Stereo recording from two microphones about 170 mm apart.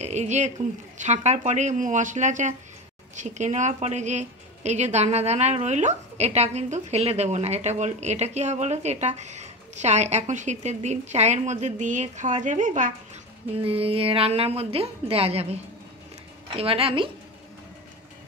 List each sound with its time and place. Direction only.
0.0 s a woman's voice: 40° right (ahead or behind)
13.6 s a woman's voice: 35° right (ahead or behind)